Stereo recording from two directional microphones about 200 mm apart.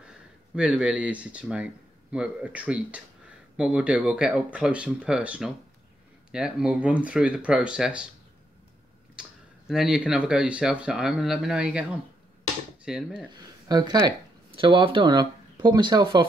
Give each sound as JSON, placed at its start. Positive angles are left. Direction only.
{"t": 0.0, "sound": "speech", "side_deg": -5}
{"t": 9.2, "sound": "a sound", "side_deg": -5}
{"t": 9.7, "sound": "speech", "side_deg": 0}
{"t": 13.7, "sound": "speech", "side_deg": -20}